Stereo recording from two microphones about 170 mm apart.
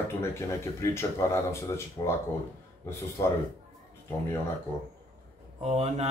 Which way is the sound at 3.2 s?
20° left (ahead or behind).